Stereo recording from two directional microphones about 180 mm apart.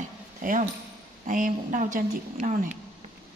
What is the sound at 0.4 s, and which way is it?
A woman's voice, 50° right (ahead or behind).